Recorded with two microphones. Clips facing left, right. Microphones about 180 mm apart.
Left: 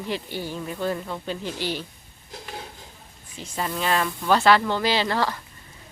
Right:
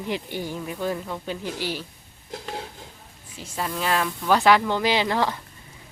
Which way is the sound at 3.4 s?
Centre (ahead or behind).